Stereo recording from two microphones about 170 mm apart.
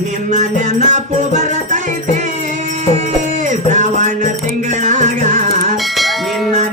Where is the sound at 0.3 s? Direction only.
45° right (ahead or behind).